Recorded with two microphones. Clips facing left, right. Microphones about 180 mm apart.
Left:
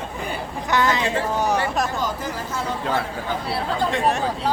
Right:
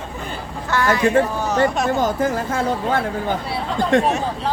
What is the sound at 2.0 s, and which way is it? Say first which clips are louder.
Speech: right 7 dB; 55° right (ahead or behind).